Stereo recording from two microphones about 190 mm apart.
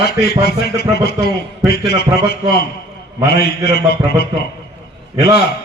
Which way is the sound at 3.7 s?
55° left (ahead or behind).